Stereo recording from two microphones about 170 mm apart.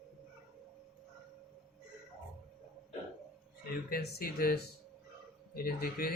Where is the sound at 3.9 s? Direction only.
65° left (ahead or behind).